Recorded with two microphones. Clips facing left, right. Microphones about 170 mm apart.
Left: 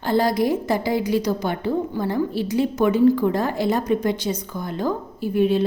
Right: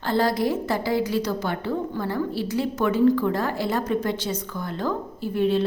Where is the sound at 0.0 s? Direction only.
15° left (ahead or behind).